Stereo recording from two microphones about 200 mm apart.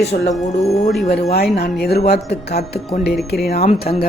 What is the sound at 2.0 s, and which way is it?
Speech, 50° left (ahead or behind).